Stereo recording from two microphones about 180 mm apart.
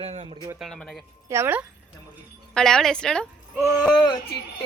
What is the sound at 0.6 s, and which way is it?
Speech, 5° left (ahead or behind).